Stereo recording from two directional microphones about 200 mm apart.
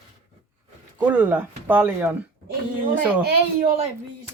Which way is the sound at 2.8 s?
45° right (ahead or behind).